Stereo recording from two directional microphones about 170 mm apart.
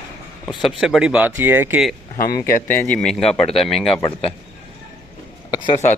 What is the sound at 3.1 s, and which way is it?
Speech, centre (ahead or behind).